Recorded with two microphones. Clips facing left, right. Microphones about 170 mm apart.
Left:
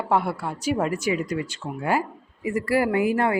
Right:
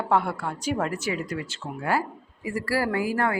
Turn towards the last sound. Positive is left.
turn(degrees=20)  # may be behind; listen again after turning